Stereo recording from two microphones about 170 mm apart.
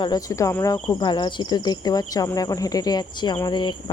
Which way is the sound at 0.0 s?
20° left (ahead or behind).